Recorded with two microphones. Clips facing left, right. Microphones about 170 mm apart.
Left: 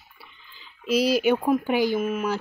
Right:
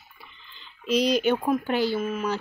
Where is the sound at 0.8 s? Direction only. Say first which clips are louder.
Left 1 dB; 5° left (ahead or behind).